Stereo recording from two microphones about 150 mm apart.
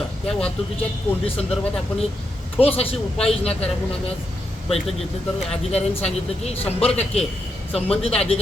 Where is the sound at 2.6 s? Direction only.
40° left (ahead or behind).